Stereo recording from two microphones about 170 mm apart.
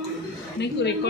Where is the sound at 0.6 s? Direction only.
90° left.